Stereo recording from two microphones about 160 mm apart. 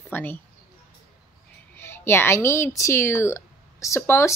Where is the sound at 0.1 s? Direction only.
10° left (ahead or behind).